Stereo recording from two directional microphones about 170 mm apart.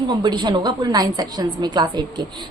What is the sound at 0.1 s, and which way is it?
A woman's voice, 25° right (ahead or behind).